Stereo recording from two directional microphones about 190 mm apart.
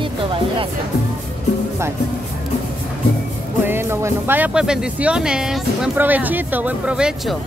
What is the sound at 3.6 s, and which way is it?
Speech, 10° right (ahead or behind).